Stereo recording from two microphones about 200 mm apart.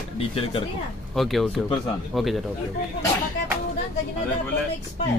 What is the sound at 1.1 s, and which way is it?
Speech, centre (ahead or behind).